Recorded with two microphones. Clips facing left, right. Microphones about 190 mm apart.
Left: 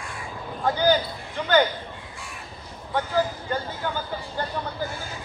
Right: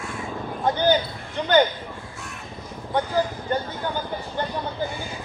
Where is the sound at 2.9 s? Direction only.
20° right (ahead or behind).